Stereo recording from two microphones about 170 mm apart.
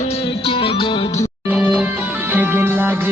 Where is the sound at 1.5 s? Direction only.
10° right (ahead or behind).